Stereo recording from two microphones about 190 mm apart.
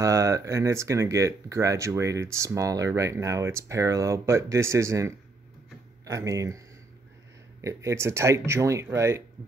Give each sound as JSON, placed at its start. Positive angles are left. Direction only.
{"t": 0.0, "sound": "speech", "side_deg": -15}
{"t": 7.6, "sound": "speech", "side_deg": -15}